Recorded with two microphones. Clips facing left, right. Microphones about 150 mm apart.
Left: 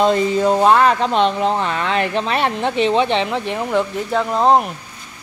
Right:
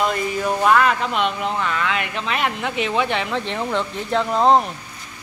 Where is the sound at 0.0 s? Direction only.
25° left (ahead or behind); by 4.6 s 5° left (ahead or behind).